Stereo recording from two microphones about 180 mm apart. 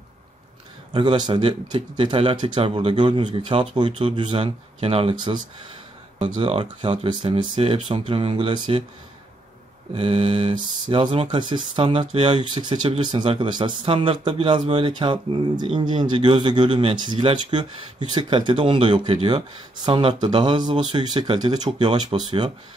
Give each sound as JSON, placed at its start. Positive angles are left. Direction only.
{"t": 0.9, "sound": "speech", "side_deg": -25}
{"t": 9.9, "sound": "speech", "side_deg": -30}